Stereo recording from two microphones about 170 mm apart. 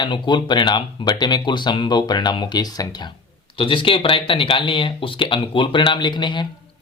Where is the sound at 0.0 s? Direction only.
25° left (ahead or behind).